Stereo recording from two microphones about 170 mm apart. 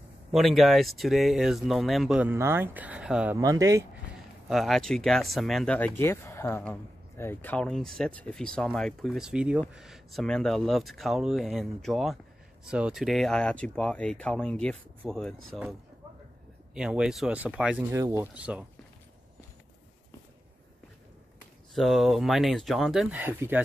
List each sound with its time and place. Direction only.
0.3 s speech: centre (ahead or behind)
3.3 s speech: 20° right (ahead or behind)
4.5 s speech: centre (ahead or behind)
16.7 s speech: 5° right (ahead or behind)
17.9 s speech: 15° right (ahead or behind)
21.7 s speech: centre (ahead or behind)